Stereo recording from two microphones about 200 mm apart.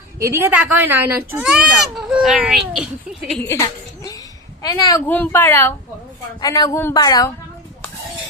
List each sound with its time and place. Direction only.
0.2 s a child's voice: 15° right (ahead or behind)
3.4 s a sound: 15° left (ahead or behind)
4.7 s a woman's voice: 15° left (ahead or behind)